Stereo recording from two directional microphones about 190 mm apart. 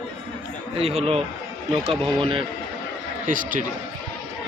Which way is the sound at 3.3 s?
45° right (ahead or behind).